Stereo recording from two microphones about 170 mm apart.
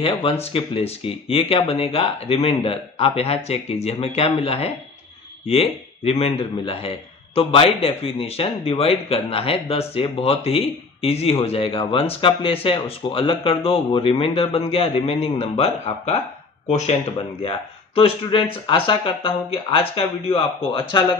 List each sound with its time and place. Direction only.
0.0 s speech: 35° left (ahead or behind)